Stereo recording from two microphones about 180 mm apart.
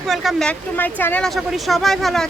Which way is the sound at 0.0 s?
Centre (ahead or behind).